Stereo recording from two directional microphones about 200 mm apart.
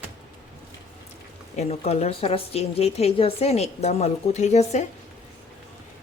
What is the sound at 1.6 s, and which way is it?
A woman's voice, 30° left (ahead or behind).